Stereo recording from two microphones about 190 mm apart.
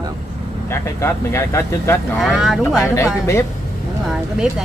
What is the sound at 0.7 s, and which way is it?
Speech, 15° left (ahead or behind).